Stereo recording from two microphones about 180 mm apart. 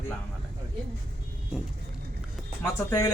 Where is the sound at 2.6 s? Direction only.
15° left (ahead or behind).